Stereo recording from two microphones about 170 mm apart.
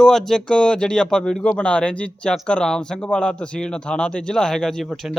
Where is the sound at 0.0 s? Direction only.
Centre (ahead or behind).